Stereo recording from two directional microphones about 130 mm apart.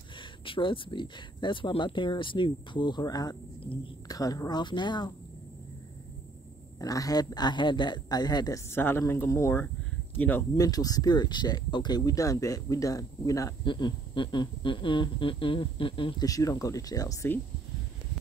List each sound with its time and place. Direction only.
0.5 s speech: 40° left (ahead or behind)
6.8 s speech: 30° left (ahead or behind)
8.6 s speech: 20° left (ahead or behind)
10.5 s speech: 30° left (ahead or behind)
13.7 s speech: 35° left (ahead or behind)
16.3 s speech: 25° left (ahead or behind)